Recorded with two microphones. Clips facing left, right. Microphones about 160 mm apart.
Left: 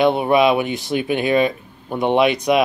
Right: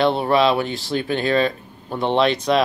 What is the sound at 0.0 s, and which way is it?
Speech, 15° left (ahead or behind).